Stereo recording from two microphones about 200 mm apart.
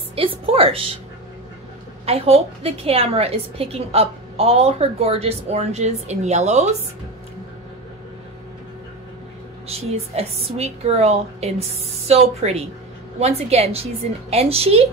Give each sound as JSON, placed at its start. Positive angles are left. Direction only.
{"t": 0.1, "sound": "a woman's voice", "side_deg": -30}
{"t": 2.0, "sound": "a woman's voice", "side_deg": -30}
{"t": 9.7, "sound": "a woman's voice", "side_deg": -30}